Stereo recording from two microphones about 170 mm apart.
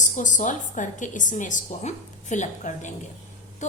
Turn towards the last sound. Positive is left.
turn(degrees=45)  # may be behind; listen again after turning